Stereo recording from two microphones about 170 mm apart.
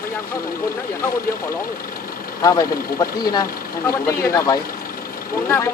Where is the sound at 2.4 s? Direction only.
20° left (ahead or behind).